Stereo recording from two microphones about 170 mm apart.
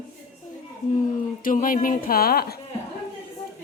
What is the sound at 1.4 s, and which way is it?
Speech, 55° left (ahead or behind).